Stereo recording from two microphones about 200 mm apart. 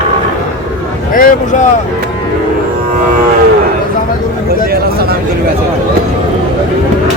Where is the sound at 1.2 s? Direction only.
40° left (ahead or behind).